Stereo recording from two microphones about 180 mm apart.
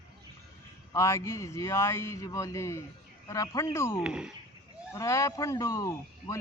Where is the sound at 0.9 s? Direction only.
15° left (ahead or behind).